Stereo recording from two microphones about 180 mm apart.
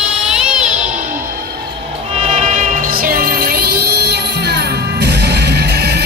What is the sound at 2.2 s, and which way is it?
Music, 35° right (ahead or behind).